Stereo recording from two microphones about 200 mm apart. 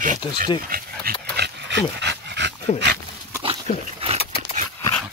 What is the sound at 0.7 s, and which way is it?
Dog, 50° right (ahead or behind).